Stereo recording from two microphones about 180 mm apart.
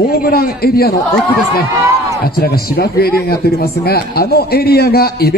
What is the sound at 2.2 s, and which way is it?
A man's voice, 55° left (ahead or behind).